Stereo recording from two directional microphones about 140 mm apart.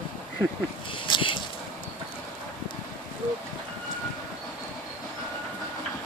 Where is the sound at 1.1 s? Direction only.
35° left (ahead or behind).